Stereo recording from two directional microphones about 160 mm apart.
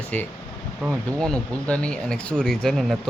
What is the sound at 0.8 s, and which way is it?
Speech, 5° right (ahead or behind).